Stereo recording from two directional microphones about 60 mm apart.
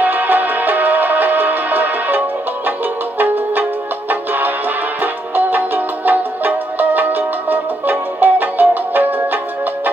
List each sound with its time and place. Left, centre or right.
0.0 s music: right